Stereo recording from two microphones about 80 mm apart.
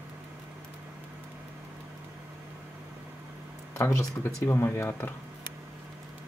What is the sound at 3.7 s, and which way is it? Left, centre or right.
Speech, left.